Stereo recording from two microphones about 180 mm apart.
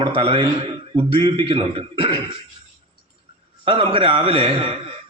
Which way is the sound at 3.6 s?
30° right (ahead or behind).